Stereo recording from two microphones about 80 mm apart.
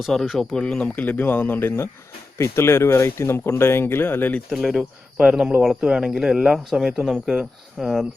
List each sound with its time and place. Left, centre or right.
0.0 s speech: centre; by 4.4 s left
4.5 s speech: centre